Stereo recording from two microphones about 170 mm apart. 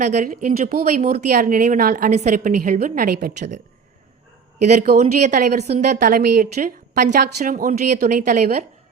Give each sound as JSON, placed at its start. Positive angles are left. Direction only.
{"t": 0.0, "sound": "speech", "side_deg": -45}
{"t": 4.6, "sound": "speech", "side_deg": -50}